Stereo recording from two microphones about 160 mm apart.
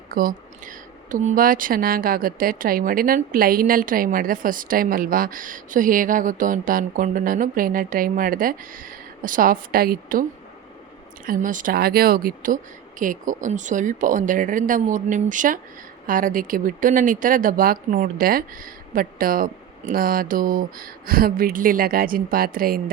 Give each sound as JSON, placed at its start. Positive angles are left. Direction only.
{"t": 0.1, "sound": "speech", "side_deg": -60}
{"t": 11.3, "sound": "speech", "side_deg": -55}